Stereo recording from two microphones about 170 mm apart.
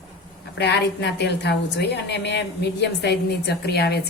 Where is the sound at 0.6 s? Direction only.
90° left; by 4.0 s 70° left (ahead or behind).